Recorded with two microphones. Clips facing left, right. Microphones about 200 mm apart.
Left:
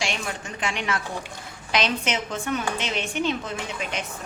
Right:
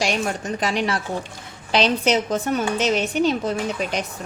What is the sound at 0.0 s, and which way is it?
A woman's voice, 40° right (ahead or behind).